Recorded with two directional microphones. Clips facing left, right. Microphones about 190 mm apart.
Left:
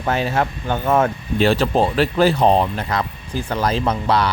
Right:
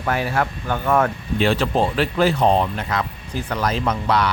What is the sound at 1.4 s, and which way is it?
Speech, 40° left (ahead or behind).